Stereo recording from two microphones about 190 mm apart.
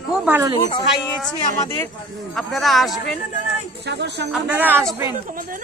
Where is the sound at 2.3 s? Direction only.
Centre (ahead or behind).